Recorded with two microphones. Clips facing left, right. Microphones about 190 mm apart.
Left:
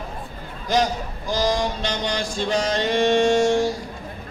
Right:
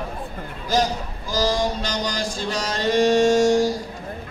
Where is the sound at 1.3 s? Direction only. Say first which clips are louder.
Even; 40° right (ahead or behind).